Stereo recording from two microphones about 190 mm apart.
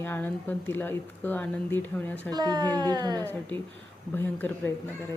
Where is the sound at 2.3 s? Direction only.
20° right (ahead or behind).